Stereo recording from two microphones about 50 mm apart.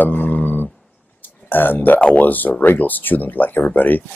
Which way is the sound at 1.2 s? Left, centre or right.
Left.